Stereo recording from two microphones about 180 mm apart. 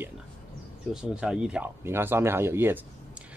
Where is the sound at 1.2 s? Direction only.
5° right (ahead or behind).